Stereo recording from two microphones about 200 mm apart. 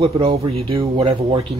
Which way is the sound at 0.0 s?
30° right (ahead or behind).